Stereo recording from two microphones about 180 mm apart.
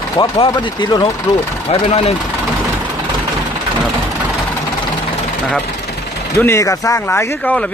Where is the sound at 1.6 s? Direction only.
35° left (ahead or behind).